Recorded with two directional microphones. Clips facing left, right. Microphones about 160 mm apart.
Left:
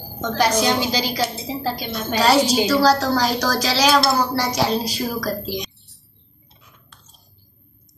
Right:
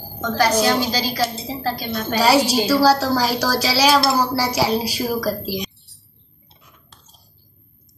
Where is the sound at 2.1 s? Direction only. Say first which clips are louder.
Even; 10° right (ahead or behind).